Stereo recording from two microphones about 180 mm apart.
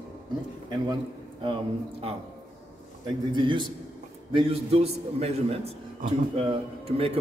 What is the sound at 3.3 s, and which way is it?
A man's voice, 25° right (ahead or behind).